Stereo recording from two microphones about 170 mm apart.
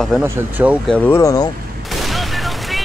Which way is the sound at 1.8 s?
Centre (ahead or behind).